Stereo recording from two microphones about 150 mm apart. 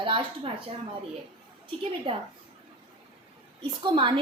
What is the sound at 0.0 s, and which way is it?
Speech, 35° right (ahead or behind).